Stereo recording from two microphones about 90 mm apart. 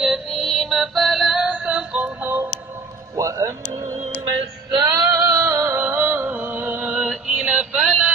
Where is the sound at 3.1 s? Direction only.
35° right (ahead or behind).